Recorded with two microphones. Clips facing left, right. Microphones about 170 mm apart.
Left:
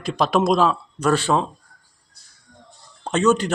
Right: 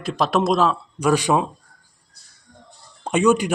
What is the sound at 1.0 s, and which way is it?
Speech, 10° right (ahead or behind).